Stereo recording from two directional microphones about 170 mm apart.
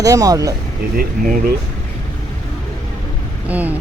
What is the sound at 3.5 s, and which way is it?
Speech, 10° right (ahead or behind).